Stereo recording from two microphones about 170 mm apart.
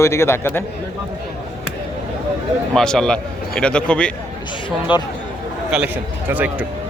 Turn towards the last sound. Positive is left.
turn(degrees=-10)  # may be behind; listen again after turning